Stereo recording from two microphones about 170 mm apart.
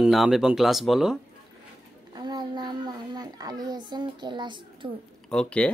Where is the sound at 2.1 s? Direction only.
25° right (ahead or behind).